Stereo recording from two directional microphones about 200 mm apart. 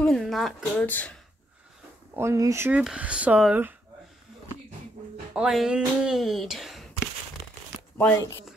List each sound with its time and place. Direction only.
0.0 s speech: centre (ahead or behind)
2.1 s speech: 15° right (ahead or behind)
5.3 s a sound: 5° right (ahead or behind)
8.0 s speech: 10° left (ahead or behind)